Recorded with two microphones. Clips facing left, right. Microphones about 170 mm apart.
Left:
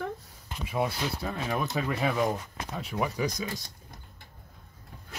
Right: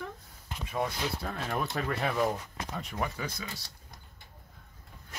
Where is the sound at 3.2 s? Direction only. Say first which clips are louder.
Left 8 dB; 15° left (ahead or behind).